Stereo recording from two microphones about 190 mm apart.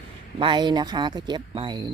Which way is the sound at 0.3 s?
25° right (ahead or behind).